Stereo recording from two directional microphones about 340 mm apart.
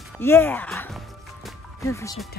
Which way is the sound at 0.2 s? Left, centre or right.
Centre.